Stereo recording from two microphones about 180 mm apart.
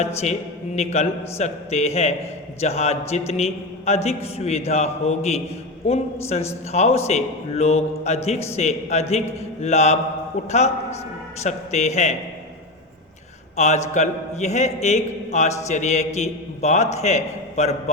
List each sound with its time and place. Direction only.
0.0 s a man's voice: 35° left (ahead or behind)
13.6 s a man's voice: 40° left (ahead or behind)